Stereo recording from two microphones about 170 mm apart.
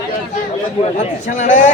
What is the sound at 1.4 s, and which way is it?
Speech, 45° left (ahead or behind).